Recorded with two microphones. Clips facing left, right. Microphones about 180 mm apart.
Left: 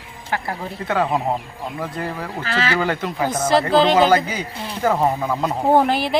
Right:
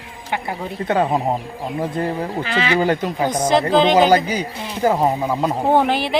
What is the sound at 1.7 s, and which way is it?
Speech, 25° right (ahead or behind).